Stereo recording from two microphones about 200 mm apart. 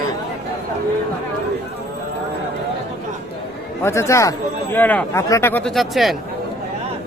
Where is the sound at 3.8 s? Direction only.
15° left (ahead or behind).